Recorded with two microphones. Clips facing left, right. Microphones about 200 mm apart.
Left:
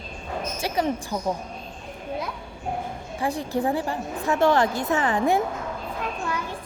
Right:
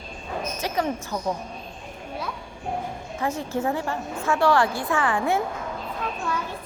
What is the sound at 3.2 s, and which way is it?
A woman's voice, 15° left (ahead or behind).